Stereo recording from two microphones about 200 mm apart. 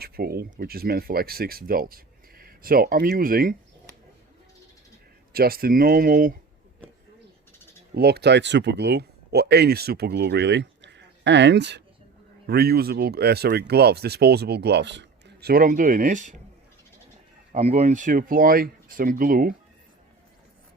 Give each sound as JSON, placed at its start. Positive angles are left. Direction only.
{"t": 0.0, "sound": "speech", "side_deg": -50}
{"t": 5.3, "sound": "speech", "side_deg": -50}
{"t": 7.9, "sound": "speech", "side_deg": -55}
{"t": 17.5, "sound": "speech", "side_deg": -35}